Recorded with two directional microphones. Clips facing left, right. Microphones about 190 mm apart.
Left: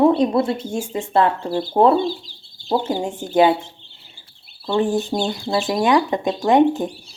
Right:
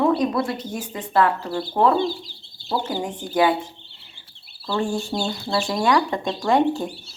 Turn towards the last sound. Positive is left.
turn(degrees=15)  # may be behind; listen again after turning